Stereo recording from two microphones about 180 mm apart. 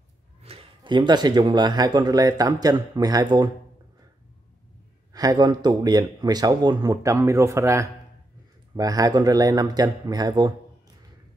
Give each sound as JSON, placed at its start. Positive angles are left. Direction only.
{"t": 0.4, "sound": "speech", "side_deg": -35}
{"t": 5.1, "sound": "speech", "side_deg": -20}